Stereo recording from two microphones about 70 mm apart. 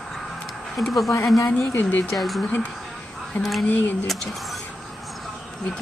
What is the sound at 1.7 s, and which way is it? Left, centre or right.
Speech, left.